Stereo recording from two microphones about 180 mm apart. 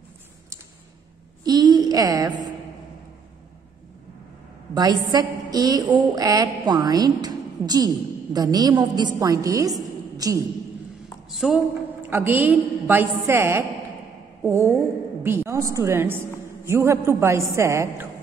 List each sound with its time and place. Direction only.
1.4 s a sound: 20° right (ahead or behind)
4.7 s a woman's voice: 20° right (ahead or behind)
11.2 s a woman's voice: centre (ahead or behind)